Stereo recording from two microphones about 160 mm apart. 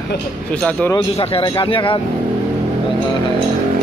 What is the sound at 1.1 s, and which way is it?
Speech, 40° left (ahead or behind).